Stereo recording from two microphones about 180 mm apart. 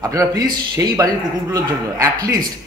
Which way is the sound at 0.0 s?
20° right (ahead or behind).